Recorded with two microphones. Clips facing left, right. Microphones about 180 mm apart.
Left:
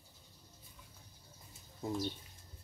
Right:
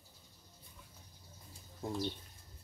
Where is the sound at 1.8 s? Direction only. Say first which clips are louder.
Left 2 dB; centre (ahead or behind).